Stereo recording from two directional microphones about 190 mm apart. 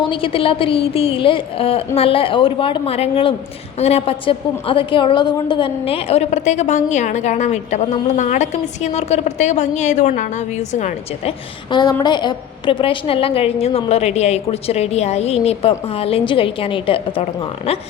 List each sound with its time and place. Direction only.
0.0 s a woman's voice: 25° left (ahead or behind)